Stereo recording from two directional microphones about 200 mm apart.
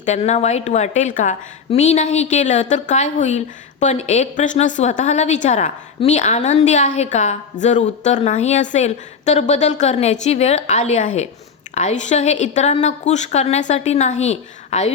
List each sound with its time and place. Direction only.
0.0 s a woman's voice: 35° left (ahead or behind)